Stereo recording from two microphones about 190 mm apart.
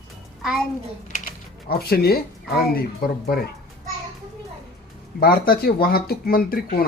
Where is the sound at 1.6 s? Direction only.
55° left (ahead or behind).